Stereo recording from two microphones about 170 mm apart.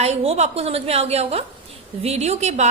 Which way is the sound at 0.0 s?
40° right (ahead or behind).